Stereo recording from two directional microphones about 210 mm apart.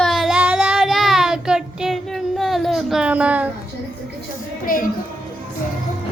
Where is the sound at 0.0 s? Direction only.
Centre (ahead or behind).